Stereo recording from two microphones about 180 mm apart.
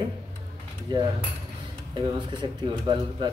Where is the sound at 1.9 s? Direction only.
25° right (ahead or behind).